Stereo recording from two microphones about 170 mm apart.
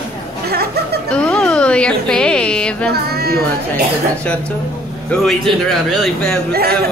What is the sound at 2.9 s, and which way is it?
Speech, 65° right (ahead or behind).